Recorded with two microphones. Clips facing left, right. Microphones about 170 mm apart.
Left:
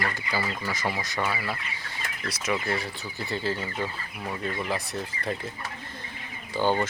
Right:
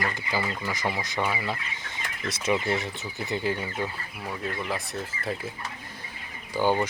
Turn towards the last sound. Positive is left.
turn(degrees=-10)  # may be behind; listen again after turning